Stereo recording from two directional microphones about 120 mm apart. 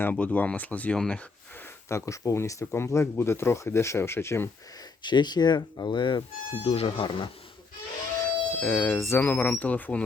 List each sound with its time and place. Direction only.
0.0 s speech: 15° left (ahead or behind)
1.9 s speech: 25° left (ahead or behind)
5.0 s speech: 40° left (ahead or behind)
6.5 s speech: 55° left (ahead or behind)
8.2 s speech: 15° left (ahead or behind)